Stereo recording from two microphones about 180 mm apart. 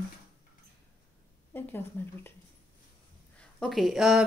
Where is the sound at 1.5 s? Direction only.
10° left (ahead or behind).